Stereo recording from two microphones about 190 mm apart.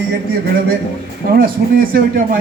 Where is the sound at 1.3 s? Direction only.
50° right (ahead or behind).